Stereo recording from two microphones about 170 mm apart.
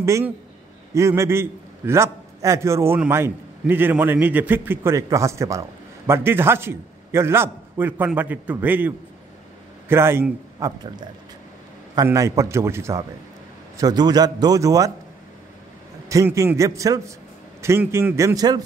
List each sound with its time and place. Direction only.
0.0 s a man's voice: 15° right (ahead or behind)
11.9 s a man's voice: 20° right (ahead or behind)
16.1 s a man's voice: 20° right (ahead or behind)